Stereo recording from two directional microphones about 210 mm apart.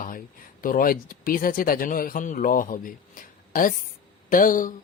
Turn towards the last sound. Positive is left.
turn(degrees=40)  # may be behind; listen again after turning